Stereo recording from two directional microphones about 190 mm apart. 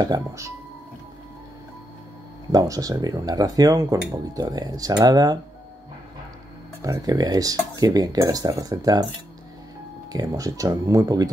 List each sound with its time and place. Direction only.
0.0 s speech: 20° right (ahead or behind)
2.5 s speech: 20° right (ahead or behind)
6.8 s speech: 20° right (ahead or behind)
10.1 s speech: 20° right (ahead or behind)